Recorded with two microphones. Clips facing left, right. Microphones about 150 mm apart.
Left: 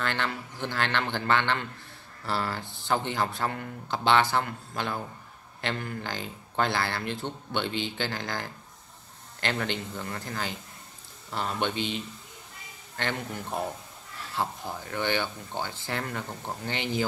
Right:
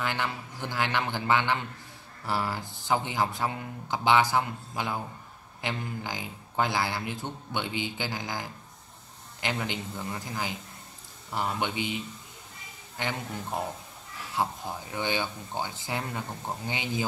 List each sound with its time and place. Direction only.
0.0 s speech: 10° right (ahead or behind)
2.6 s speech: 20° left (ahead or behind)
2.9 s speech: 10° right (ahead or behind)
14.3 s speech: 15° right (ahead or behind)